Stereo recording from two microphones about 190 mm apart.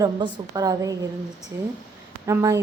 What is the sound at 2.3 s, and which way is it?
Speech, 15° right (ahead or behind).